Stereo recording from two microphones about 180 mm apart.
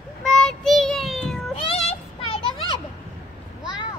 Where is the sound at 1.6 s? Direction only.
35° left (ahead or behind).